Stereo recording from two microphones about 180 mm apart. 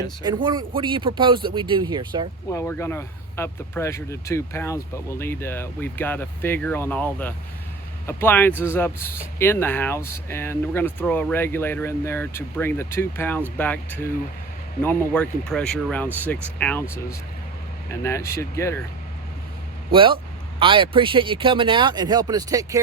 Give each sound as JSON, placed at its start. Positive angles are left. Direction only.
{"t": 0.8, "sound": "speech", "side_deg": -25}
{"t": 2.5, "sound": "speech", "side_deg": 15}
{"t": 19.9, "sound": "speech", "side_deg": -30}